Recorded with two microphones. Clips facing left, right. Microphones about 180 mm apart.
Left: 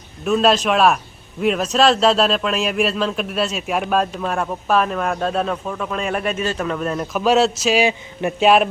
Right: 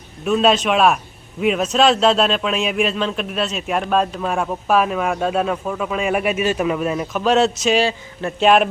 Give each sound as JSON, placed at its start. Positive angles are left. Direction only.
{"t": 0.3, "sound": "a man's voice", "side_deg": 0}
{"t": 7.1, "sound": "a man's voice", "side_deg": 5}